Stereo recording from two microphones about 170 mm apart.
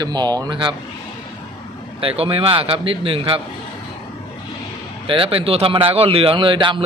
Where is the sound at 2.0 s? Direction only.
35° right (ahead or behind).